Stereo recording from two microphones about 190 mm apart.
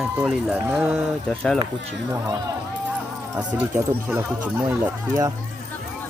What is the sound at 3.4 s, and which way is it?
Speech, 10° right (ahead or behind).